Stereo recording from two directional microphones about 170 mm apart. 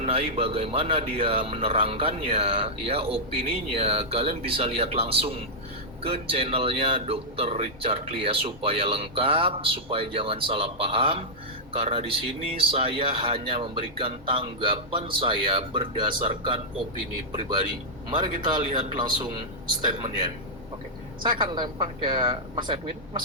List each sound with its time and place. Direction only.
0.0 s speech: 35° right (ahead or behind)